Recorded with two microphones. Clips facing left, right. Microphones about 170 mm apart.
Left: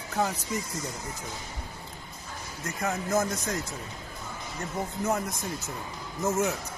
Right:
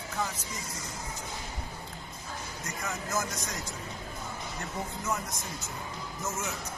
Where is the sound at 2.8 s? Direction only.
55° left (ahead or behind).